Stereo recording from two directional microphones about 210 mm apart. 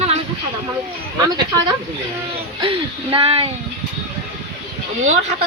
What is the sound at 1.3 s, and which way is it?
Speech, 20° right (ahead or behind).